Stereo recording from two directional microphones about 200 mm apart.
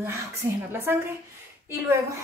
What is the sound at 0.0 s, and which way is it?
A woman's voice, 10° right (ahead or behind).